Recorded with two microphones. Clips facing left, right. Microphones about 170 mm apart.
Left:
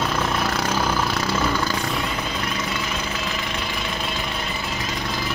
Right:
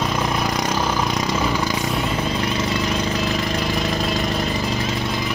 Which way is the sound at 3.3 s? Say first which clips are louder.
Right 6 dB; 40° right (ahead or behind).